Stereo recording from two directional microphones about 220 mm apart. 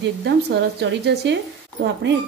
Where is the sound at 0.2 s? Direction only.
50° right (ahead or behind).